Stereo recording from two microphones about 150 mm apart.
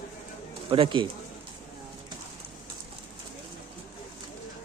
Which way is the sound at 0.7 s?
35° right (ahead or behind).